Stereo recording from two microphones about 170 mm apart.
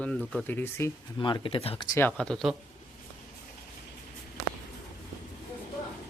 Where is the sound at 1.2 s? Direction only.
30° left (ahead or behind).